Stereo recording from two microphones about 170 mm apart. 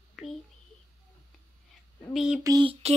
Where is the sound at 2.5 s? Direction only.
30° right (ahead or behind).